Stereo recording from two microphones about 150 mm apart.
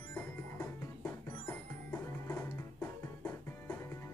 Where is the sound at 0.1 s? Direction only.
15° left (ahead or behind).